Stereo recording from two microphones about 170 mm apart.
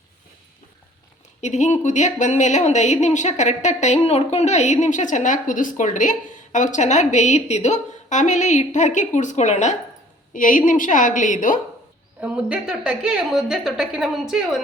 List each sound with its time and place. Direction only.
1.4 s a woman's voice: 45° left (ahead or behind)
12.2 s a woman's voice: 5° right (ahead or behind)